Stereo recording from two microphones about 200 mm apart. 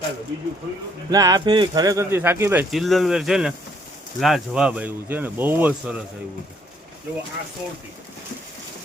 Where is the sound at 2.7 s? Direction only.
Centre (ahead or behind).